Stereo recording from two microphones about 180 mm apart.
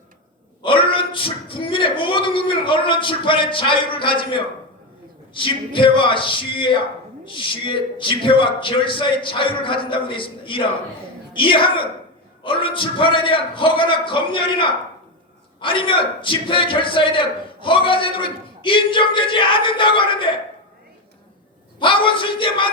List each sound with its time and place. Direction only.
0.6 s a man's voice: 30° left (ahead or behind)
21.8 s a man's voice: 30° left (ahead or behind)